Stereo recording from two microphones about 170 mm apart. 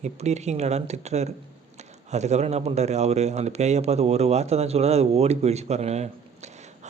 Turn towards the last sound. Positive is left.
turn(degrees=-40)  # may be behind; listen again after turning